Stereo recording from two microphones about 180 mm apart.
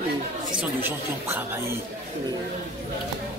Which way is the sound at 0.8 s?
10° right (ahead or behind).